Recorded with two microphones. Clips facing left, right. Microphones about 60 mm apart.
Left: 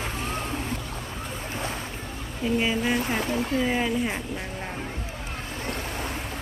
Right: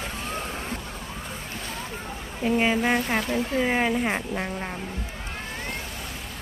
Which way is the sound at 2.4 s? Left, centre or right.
Right.